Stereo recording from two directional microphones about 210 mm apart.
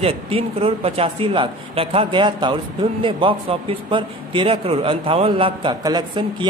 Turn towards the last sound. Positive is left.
turn(degrees=-20)  # may be behind; listen again after turning